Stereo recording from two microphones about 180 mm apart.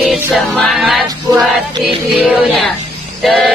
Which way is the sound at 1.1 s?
20° right (ahead or behind).